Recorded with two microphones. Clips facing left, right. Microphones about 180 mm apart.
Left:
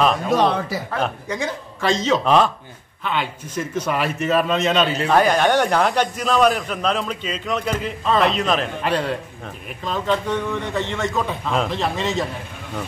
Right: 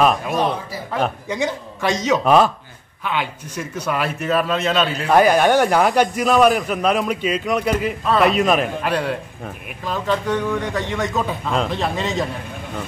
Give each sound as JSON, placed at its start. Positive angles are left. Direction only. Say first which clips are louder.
{"t": 0.4, "sound": "speech", "louder": "left 2 dB", "side_deg": 75}
{"t": 1.3, "sound": "a man's voice", "louder": "right 3 dB", "side_deg": -15}
{"t": 11.1, "sound": "a man's voice", "louder": "even", "side_deg": 0}